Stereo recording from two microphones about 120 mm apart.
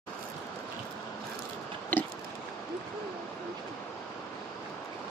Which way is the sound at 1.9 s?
15° left (ahead or behind).